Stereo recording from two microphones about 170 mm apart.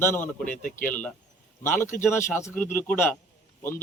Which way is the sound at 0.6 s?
50° left (ahead or behind).